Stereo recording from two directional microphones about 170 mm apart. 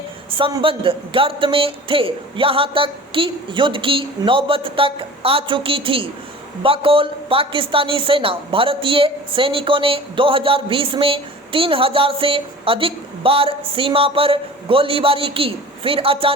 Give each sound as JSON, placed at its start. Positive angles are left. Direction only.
{"t": 0.3, "sound": "a woman's voice", "side_deg": -30}